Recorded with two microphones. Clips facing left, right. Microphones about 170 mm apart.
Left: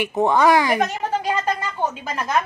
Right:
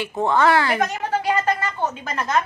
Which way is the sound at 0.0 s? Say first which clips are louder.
Left 2 dB; 15° left (ahead or behind).